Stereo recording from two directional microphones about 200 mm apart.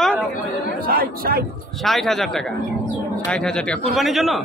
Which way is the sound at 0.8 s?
45° right (ahead or behind).